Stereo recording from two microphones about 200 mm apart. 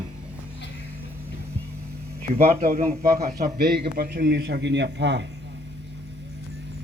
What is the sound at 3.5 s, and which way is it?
A man's voice, 50° right (ahead or behind).